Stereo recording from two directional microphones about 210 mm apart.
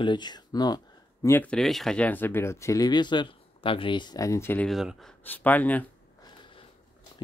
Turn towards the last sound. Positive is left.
turn(degrees=10)  # may be behind; listen again after turning